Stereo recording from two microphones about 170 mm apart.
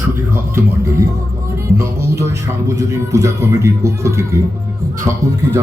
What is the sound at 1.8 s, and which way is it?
Speech, 15° right (ahead or behind).